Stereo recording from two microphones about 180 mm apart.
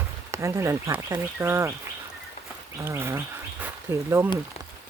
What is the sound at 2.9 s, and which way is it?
Speech, 15° right (ahead or behind).